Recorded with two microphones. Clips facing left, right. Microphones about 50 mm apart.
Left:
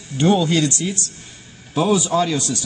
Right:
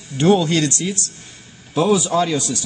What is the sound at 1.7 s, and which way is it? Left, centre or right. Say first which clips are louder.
Speech: right 1 dB; centre.